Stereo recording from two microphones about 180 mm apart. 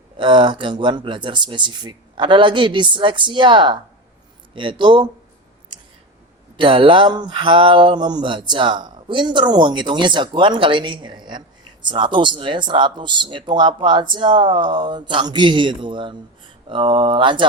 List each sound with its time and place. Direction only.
0.2 s mantra: 25° right (ahead or behind)
6.6 s mantra: 30° right (ahead or behind)